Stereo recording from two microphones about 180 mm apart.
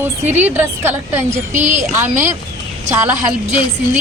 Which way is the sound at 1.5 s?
45° right (ahead or behind).